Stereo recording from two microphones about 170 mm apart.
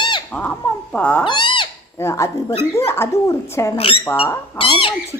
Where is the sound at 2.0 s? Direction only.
15° left (ahead or behind).